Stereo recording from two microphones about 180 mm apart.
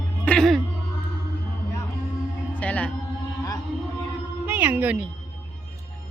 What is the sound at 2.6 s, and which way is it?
Music, 5° left (ahead or behind).